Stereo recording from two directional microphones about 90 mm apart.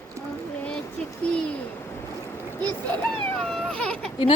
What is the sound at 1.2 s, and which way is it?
Speech, 10° left (ahead or behind).